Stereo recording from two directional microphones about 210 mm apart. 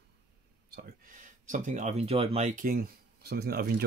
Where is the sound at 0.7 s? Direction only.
50° right (ahead or behind).